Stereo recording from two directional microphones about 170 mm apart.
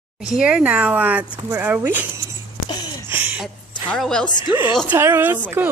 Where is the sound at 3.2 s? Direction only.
10° right (ahead or behind).